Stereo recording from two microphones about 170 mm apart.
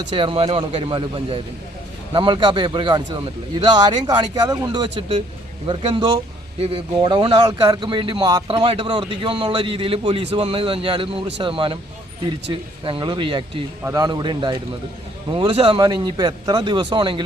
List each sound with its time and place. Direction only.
0.1 s a man's voice: 30° right (ahead or behind)
8.5 s a man's voice: 35° right (ahead or behind)